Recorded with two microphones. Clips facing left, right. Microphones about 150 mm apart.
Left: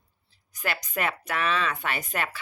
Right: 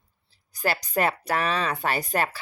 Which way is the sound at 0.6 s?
35° right (ahead or behind).